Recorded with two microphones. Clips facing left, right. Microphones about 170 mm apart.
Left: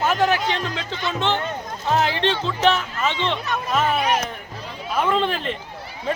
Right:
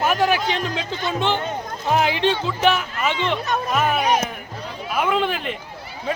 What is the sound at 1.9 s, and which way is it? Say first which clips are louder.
Speech: right 1 dB; 15° right (ahead or behind).